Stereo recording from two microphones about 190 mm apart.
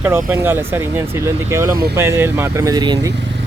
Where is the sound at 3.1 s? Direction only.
65° right (ahead or behind).